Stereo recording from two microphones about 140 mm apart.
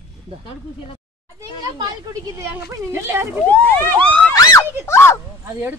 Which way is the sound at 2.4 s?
20° right (ahead or behind).